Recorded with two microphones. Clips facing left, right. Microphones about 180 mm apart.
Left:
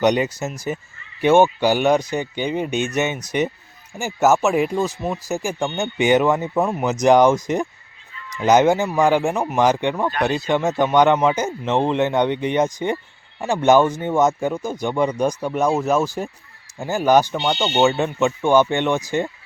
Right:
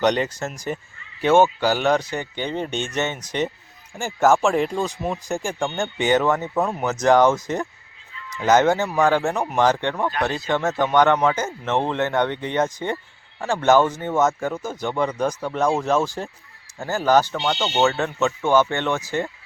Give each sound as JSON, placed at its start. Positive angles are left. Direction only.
{"t": 0.0, "sound": "speech", "side_deg": 10}